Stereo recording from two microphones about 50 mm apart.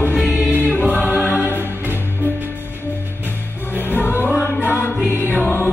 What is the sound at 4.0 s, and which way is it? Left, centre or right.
Music, left.